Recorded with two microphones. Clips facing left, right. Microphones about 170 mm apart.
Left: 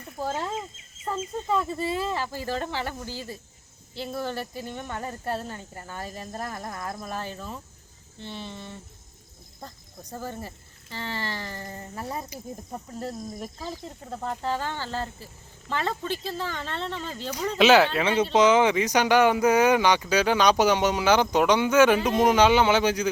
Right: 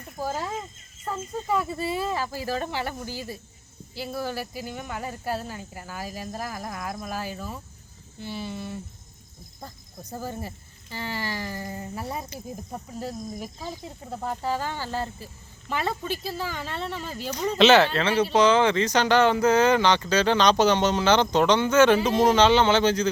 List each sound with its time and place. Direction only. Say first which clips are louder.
0.2 s speech: even; 10° right (ahead or behind)
10.1 s speech: right 2 dB; 10° right (ahead or behind)
17.9 s speech: even; 20° left (ahead or behind)